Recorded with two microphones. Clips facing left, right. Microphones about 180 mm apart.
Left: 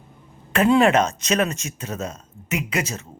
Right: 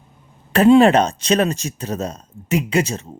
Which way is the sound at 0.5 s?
35° right (ahead or behind).